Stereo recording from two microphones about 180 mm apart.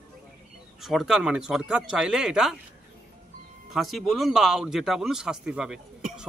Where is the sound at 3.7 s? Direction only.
Centre (ahead or behind).